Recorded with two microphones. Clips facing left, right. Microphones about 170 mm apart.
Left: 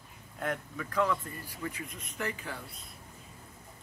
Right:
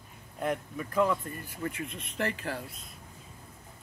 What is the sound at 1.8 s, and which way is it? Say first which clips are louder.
Speech: right 5 dB; 75° right (ahead or behind).